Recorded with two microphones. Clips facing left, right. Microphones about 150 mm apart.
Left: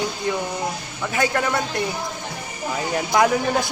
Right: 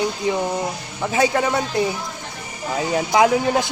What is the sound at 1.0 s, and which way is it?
Speech, 25° right (ahead or behind).